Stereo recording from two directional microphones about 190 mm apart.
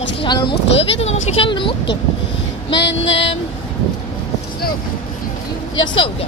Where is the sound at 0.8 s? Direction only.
30° left (ahead or behind).